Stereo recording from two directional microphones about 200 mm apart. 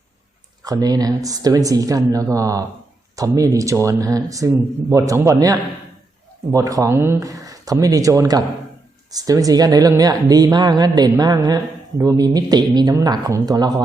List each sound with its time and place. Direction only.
0.6 s a woman's voice: 20° right (ahead or behind)